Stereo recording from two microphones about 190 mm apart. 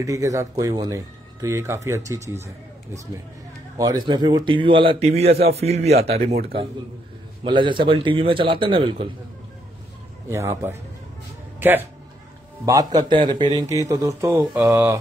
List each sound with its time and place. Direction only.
0.0 s speech: 15° right (ahead or behind)
3.7 s a man's voice: 20° right (ahead or behind)
7.4 s a man's voice: 25° right (ahead or behind)
10.3 s speech: 15° right (ahead or behind)
12.6 s speech: 20° right (ahead or behind)